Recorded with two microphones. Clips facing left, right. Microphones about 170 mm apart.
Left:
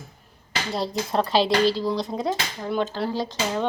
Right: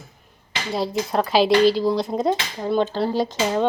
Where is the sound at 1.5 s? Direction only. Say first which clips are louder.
Right 5 dB; 20° right (ahead or behind).